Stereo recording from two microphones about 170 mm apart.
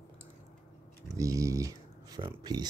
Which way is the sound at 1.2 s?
20° right (ahead or behind).